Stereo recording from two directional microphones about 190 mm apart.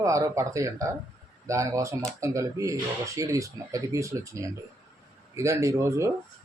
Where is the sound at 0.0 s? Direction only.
15° right (ahead or behind).